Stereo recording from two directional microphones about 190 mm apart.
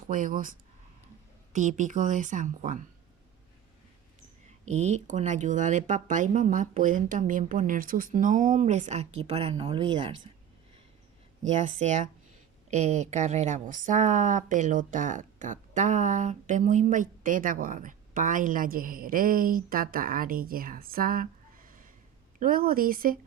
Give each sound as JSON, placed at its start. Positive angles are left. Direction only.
{"t": 0.1, "sound": "speech", "side_deg": -45}
{"t": 1.5, "sound": "speech", "side_deg": -40}
{"t": 4.4, "sound": "speech", "side_deg": -35}
{"t": 11.8, "sound": "speech", "side_deg": -40}